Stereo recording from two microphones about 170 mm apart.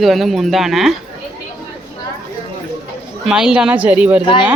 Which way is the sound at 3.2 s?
5° right (ahead or behind).